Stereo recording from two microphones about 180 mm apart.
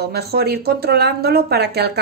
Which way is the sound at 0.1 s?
60° right (ahead or behind).